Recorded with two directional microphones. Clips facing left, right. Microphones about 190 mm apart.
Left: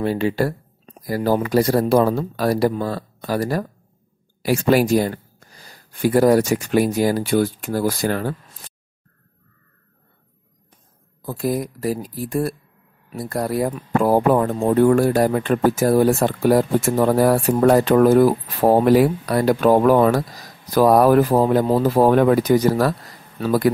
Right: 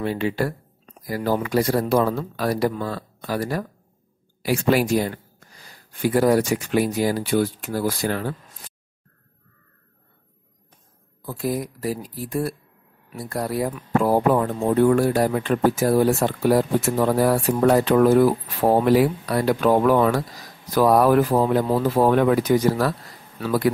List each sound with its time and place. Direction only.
0.0 s speech: 40° left (ahead or behind)
11.2 s speech: 45° left (ahead or behind)